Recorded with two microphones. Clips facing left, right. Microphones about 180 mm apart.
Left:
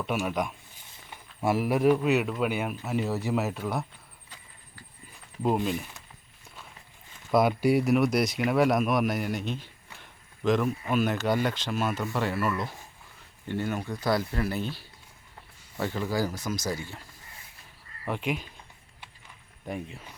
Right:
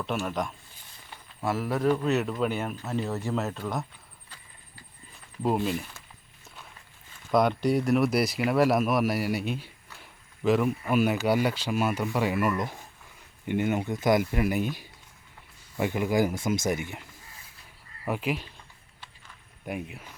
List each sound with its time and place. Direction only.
0.0 s speech: 5° left (ahead or behind)
2.0 s speech: centre (ahead or behind)
7.3 s speech: 5° left (ahead or behind); by 17.1 s 20° right (ahead or behind)
18.0 s speech: 5° right (ahead or behind)
19.6 s speech: 5° right (ahead or behind)